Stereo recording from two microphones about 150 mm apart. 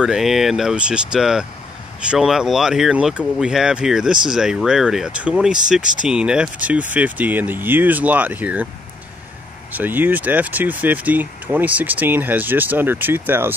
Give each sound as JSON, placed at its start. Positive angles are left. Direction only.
{"t": 0.0, "sound": "speech", "side_deg": -5}
{"t": 5.8, "sound": "speech", "side_deg": -60}
{"t": 6.0, "sound": "speech", "side_deg": -5}
{"t": 9.7, "sound": "speech", "side_deg": -10}